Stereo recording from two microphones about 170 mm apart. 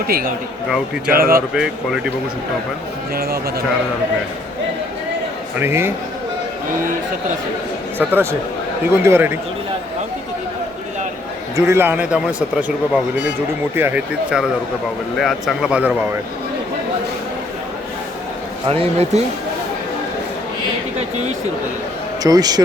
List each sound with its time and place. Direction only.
0.1 s speech: 60° right (ahead or behind)
1.5 s speech: 5° right (ahead or behind)
3.2 s speech: 65° right (ahead or behind)
5.5 s speech: 15° right (ahead or behind)
7.9 s speech: 15° right (ahead or behind)
11.5 s speech: 15° right (ahead or behind)
18.7 s speech: 35° right (ahead or behind)
21.0 s a sound: 40° right (ahead or behind)
22.2 s a man's voice: 20° right (ahead or behind)